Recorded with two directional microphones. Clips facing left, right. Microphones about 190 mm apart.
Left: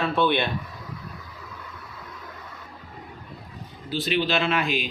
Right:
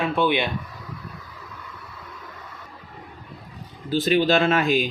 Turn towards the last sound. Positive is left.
turn(degrees=-45)  # may be behind; listen again after turning